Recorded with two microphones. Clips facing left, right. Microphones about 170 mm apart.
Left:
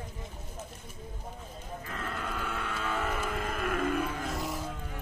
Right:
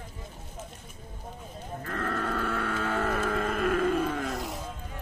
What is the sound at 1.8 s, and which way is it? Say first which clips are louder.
Music: right 7 dB; 60° right (ahead or behind).